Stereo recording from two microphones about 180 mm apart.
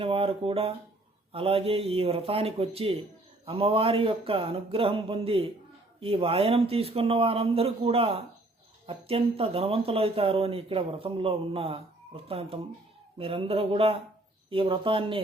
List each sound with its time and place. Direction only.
0.0 s speech: 30° right (ahead or behind)